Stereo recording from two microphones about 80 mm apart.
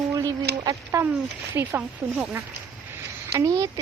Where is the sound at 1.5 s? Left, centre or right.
Right.